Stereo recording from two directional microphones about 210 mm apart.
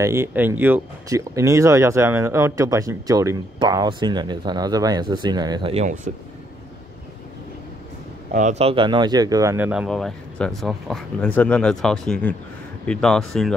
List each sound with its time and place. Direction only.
0.0 s speech: 10° right (ahead or behind); by 5.9 s 30° right (ahead or behind)
8.3 s speech: 35° right (ahead or behind); by 13.6 s centre (ahead or behind)